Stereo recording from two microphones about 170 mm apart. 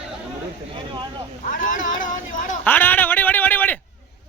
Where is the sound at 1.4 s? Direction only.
50° left (ahead or behind).